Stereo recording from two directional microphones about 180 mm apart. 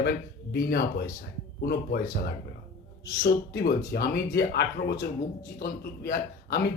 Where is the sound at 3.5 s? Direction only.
60° left (ahead or behind).